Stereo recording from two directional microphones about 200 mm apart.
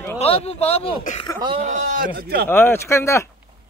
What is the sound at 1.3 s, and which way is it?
Speech, 25° right (ahead or behind).